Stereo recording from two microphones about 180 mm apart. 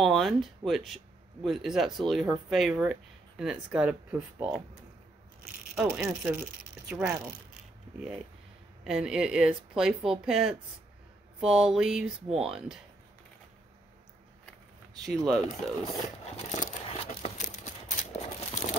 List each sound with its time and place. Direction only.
0.0 s speech: centre (ahead or behind)
5.8 s speech: 5° right (ahead or behind)
8.8 s speech: 5° right (ahead or behind)
15.0 s speech: centre (ahead or behind)
16.5 s a sound: 35° left (ahead or behind)